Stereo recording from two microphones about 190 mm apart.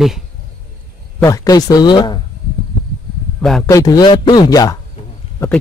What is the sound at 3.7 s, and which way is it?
Speech, 20° left (ahead or behind).